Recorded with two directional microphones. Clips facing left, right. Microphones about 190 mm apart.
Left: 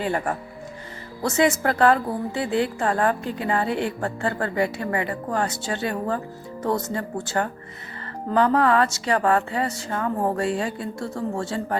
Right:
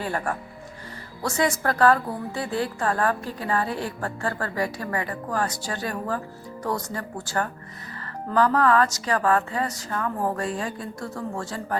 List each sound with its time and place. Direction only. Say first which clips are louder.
0.0 s a woman's voice: left 3 dB; 20° left (ahead or behind)